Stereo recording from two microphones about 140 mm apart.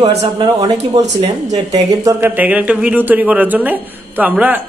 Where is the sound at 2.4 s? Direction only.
10° right (ahead or behind).